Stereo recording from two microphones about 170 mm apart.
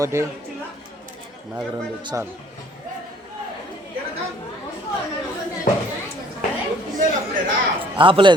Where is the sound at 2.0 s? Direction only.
20° right (ahead or behind).